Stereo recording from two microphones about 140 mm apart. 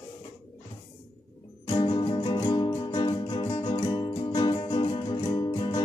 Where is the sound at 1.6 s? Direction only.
40° left (ahead or behind).